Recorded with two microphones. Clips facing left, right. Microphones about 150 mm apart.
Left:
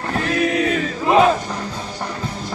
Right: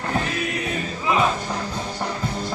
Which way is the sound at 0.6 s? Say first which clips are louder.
Left 7 dB; 70° left (ahead or behind).